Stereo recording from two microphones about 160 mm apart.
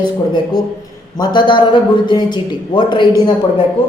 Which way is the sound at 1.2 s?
30° left (ahead or behind).